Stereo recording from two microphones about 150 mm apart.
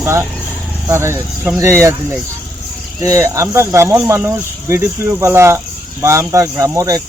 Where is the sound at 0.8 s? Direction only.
15° right (ahead or behind).